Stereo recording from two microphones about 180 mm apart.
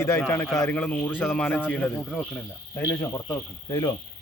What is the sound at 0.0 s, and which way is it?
Speech, 10° left (ahead or behind).